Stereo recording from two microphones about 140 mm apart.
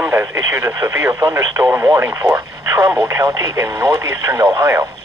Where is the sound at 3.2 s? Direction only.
25° right (ahead or behind).